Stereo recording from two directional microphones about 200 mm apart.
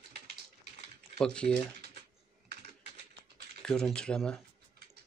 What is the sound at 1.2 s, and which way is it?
Speech, 5° left (ahead or behind).